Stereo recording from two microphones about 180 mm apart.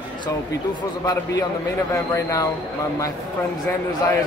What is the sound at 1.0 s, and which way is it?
Speech, 20° left (ahead or behind).